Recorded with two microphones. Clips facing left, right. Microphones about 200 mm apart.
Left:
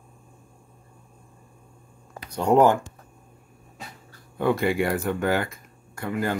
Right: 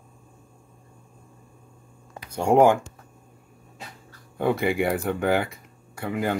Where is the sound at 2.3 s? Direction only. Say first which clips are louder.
Right 1 dB; 10° right (ahead or behind).